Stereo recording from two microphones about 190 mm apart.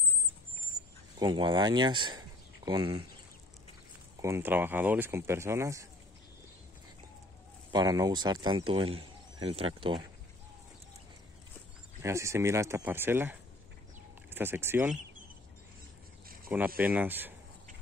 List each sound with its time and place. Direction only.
1.2 s speech: 25° right (ahead or behind)
4.2 s speech: 15° right (ahead or behind)
7.7 s speech: 20° right (ahead or behind)
12.0 s speech: 15° right (ahead or behind)
16.4 s speech: 10° right (ahead or behind)